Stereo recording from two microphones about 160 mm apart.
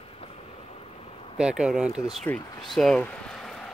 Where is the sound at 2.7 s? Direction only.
5° left (ahead or behind).